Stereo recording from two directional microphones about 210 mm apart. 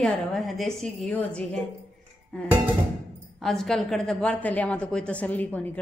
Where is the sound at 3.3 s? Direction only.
Centre (ahead or behind).